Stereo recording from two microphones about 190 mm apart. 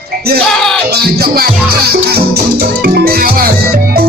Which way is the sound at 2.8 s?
55° right (ahead or behind).